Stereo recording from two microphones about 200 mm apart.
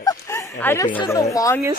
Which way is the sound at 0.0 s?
15° left (ahead or behind).